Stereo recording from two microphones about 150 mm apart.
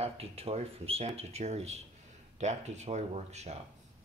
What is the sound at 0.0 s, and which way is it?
Speech, 40° right (ahead or behind).